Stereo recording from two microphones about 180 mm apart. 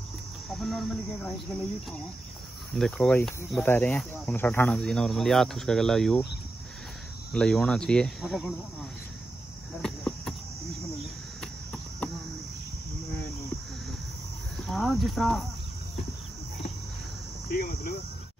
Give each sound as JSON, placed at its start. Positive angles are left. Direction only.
{"t": 0.5, "sound": "speech", "side_deg": 0}
{"t": 2.7, "sound": "speech", "side_deg": 5}
{"t": 7.3, "sound": "speech", "side_deg": 5}
{"t": 9.8, "sound": "cricket", "side_deg": 5}
{"t": 11.4, "sound": "cricket", "side_deg": 5}
{"t": 14.6, "sound": "speech", "side_deg": 0}
{"t": 17.5, "sound": "cricket", "side_deg": 55}